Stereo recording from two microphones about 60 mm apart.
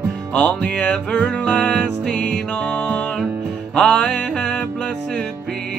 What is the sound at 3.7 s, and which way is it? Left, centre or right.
Music, centre.